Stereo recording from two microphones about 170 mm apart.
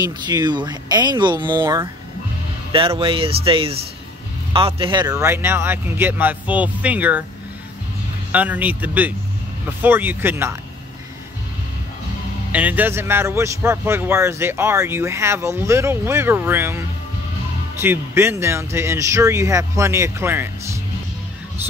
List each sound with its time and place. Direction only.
0.3 s speech: 25° right (ahead or behind)
1.6 s a man's voice: 15° right (ahead or behind)
3.0 s a man's voice: 30° right (ahead or behind); by 7.2 s 10° right (ahead or behind)
8.3 s a man's voice: 10° right (ahead or behind)
12.5 s a man's voice: 10° right (ahead or behind)